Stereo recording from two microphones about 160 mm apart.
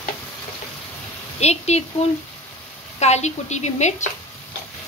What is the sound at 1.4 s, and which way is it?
Speech, 40° left (ahead or behind).